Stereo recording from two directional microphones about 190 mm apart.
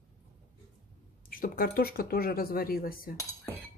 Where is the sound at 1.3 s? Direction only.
50° left (ahead or behind).